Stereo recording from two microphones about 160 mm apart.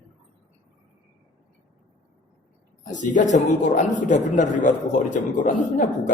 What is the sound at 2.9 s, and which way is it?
A man's voice, 50° left (ahead or behind).